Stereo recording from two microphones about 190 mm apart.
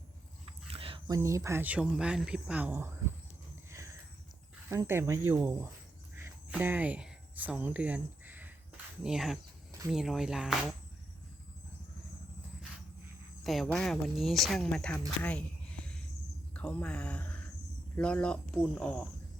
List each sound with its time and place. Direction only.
0.7 s speech: 30° right (ahead or behind); by 2.9 s 10° right (ahead or behind)
3.7 s a sound: 15° right (ahead or behind)
4.7 s speech: 15° right (ahead or behind)
6.1 s a sound: 10° right (ahead or behind)
9.0 s speech: centre (ahead or behind)
13.4 s speech: centre (ahead or behind)
16.6 s speech: 5° left (ahead or behind)